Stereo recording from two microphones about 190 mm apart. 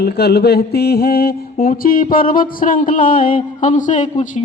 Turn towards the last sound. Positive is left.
turn(degrees=40)  # may be behind; listen again after turning